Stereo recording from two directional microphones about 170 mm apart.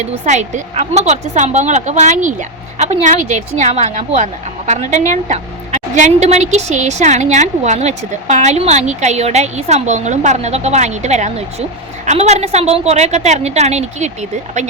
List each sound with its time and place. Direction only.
0.0 s a woman's voice: 45° right (ahead or behind)